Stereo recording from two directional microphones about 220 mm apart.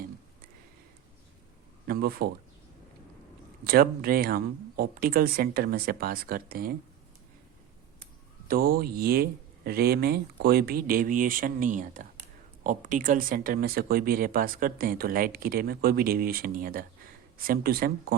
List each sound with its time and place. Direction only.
1.9 s speech: 45° right (ahead or behind)
3.6 s speech: 45° right (ahead or behind)
8.4 s speech: 45° right (ahead or behind)